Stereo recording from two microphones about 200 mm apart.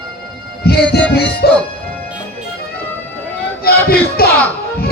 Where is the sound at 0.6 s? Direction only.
50° left (ahead or behind).